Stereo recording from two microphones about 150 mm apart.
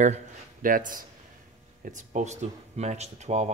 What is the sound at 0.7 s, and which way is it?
Speech, 65° right (ahead or behind).